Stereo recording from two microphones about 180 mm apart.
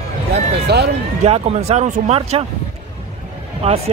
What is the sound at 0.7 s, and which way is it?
Speech, 65° right (ahead or behind).